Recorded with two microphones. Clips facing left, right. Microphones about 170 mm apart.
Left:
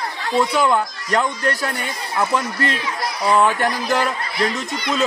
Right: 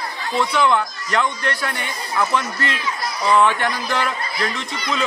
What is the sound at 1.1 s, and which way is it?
A man's voice, 40° left (ahead or behind).